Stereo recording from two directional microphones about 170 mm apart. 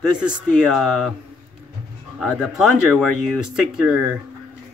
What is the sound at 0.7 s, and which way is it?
Speech, centre (ahead or behind).